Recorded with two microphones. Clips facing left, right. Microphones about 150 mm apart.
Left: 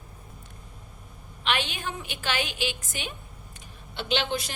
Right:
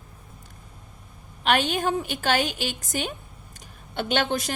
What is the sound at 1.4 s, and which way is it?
A woman's voice, 45° right (ahead or behind).